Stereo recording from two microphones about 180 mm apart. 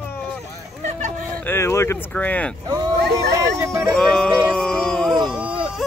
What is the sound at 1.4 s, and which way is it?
Speech, 15° left (ahead or behind).